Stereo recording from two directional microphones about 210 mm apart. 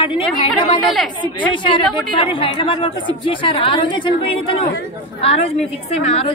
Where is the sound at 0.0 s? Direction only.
25° left (ahead or behind).